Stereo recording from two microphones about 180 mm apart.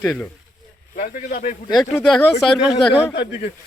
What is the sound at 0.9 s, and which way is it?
Speech, 50° left (ahead or behind).